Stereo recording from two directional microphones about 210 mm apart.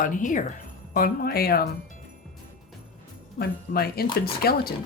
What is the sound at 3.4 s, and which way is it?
Speech, 45° left (ahead or behind).